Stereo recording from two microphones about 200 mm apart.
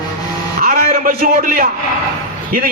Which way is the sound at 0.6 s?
45° right (ahead or behind).